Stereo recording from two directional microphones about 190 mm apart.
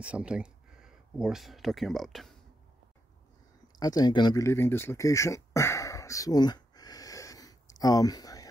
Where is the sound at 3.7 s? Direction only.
20° left (ahead or behind).